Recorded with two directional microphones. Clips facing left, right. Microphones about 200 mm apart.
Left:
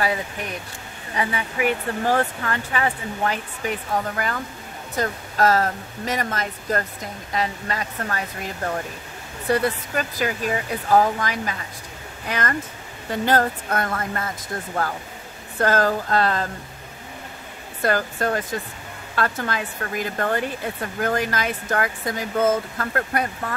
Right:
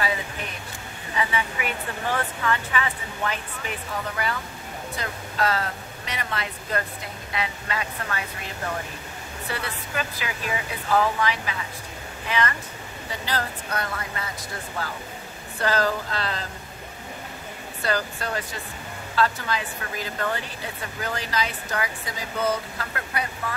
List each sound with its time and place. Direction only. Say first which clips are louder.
1.1 s speech: left 2 dB; 40° left (ahead or behind)
9.5 s speech: left 11 dB; 45° left (ahead or behind)
17.8 s speech: left 5 dB; 50° left (ahead or behind)